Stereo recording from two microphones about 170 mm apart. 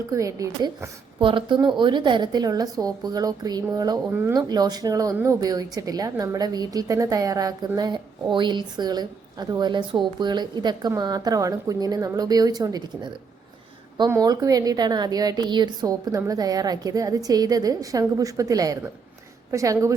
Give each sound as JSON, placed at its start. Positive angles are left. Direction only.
{"t": 0.1, "sound": "a woman's voice", "side_deg": -20}
{"t": 1.2, "sound": "a woman's voice", "side_deg": -30}
{"t": 14.1, "sound": "a woman's voice", "side_deg": -20}